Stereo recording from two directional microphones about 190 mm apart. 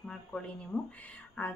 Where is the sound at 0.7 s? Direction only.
5° left (ahead or behind).